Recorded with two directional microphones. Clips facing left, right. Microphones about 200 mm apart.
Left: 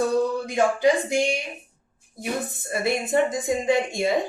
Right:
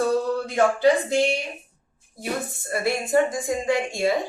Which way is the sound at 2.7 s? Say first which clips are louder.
Right 1 dB; 20° left (ahead or behind).